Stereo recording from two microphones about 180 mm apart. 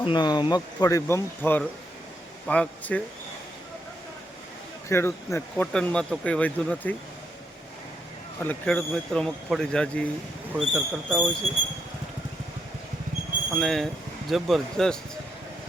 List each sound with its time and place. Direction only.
0.0 s speech: 25° left (ahead or behind); by 3.0 s 5° left (ahead or behind)
4.9 s speech: 15° left (ahead or behind)
8.4 s speech: 5° left (ahead or behind)
13.5 s speech: centre (ahead or behind)